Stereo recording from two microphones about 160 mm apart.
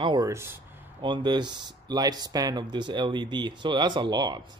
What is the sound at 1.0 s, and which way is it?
Speech, 30° right (ahead or behind).